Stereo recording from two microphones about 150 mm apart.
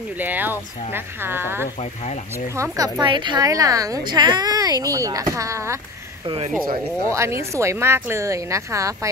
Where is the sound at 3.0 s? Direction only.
30° right (ahead or behind).